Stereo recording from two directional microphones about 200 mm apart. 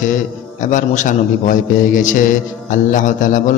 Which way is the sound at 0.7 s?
40° left (ahead or behind).